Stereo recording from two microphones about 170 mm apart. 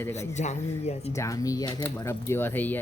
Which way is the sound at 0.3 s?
40° left (ahead or behind).